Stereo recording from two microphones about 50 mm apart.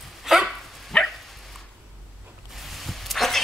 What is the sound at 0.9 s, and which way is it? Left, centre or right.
Dog, centre.